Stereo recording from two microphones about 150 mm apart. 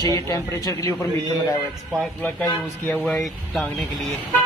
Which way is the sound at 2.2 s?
10° left (ahead or behind).